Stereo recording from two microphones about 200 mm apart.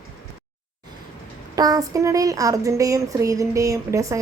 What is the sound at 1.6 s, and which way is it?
Speech, 20° right (ahead or behind).